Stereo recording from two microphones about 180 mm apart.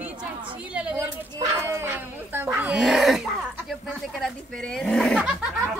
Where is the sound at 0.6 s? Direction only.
5° right (ahead or behind).